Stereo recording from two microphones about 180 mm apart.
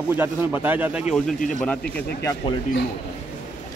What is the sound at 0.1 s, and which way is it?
Speech, 10° right (ahead or behind).